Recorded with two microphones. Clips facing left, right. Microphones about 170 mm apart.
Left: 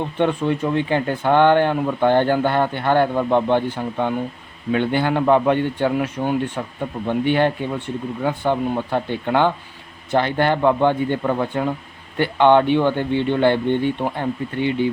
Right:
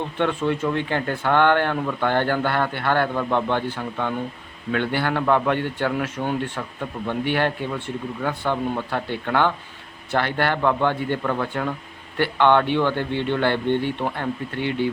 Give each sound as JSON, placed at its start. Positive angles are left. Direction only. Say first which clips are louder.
{"t": 0.0, "sound": "speech", "louder": "left 3 dB", "side_deg": 15}